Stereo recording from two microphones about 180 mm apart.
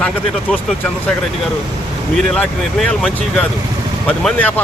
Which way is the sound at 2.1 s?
5° left (ahead or behind).